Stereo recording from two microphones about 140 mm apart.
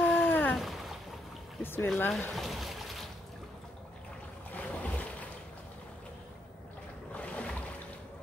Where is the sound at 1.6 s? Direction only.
15° left (ahead or behind).